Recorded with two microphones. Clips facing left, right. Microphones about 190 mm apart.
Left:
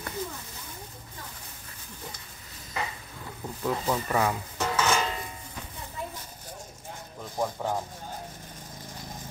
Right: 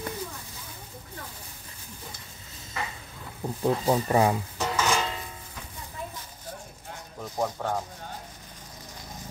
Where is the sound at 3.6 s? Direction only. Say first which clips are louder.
Right 4 dB; 30° right (ahead or behind).